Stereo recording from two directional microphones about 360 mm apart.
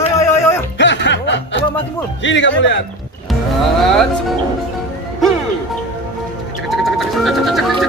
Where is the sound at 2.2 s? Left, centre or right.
Left.